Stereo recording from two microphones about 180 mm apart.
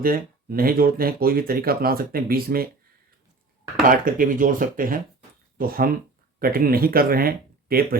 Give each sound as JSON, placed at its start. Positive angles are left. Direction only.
{"t": 0.0, "sound": "speech", "side_deg": -55}
{"t": 3.8, "sound": "speech", "side_deg": -50}